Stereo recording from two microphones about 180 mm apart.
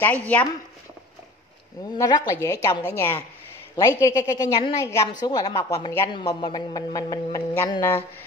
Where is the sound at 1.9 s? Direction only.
20° left (ahead or behind).